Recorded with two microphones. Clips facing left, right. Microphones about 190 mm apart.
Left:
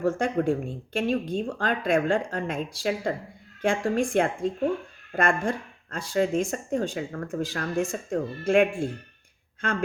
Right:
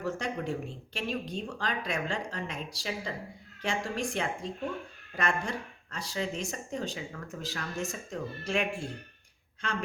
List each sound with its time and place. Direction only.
0.0 s speech: 50° left (ahead or behind)